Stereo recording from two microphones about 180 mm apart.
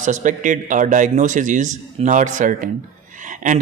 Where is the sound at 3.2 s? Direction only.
45° right (ahead or behind).